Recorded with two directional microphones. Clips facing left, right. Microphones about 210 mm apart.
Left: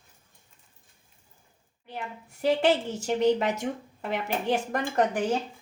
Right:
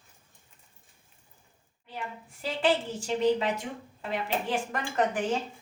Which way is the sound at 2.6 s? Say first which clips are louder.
Left 3 dB; 40° left (ahead or behind).